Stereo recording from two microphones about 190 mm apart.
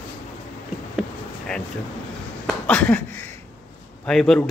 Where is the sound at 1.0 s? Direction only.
5° left (ahead or behind).